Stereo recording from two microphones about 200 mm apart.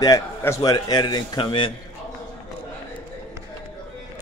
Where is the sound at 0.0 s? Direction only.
15° left (ahead or behind).